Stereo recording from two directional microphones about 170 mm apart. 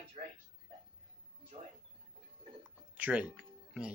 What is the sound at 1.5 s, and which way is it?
Speech, 40° right (ahead or behind).